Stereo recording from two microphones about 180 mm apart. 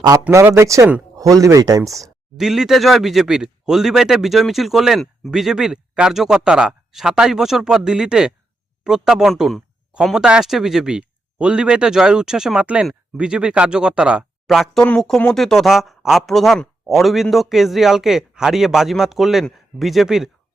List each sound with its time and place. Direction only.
0.0 s speech: 15° right (ahead or behind)
2.4 s speech: 5° right (ahead or behind)